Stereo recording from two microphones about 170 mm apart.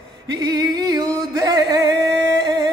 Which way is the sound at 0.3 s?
25° right (ahead or behind).